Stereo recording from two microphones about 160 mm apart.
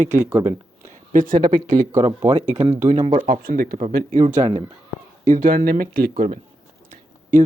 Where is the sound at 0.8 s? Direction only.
55° right (ahead or behind).